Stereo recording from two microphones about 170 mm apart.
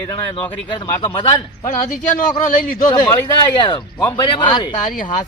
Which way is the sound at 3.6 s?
25° left (ahead or behind).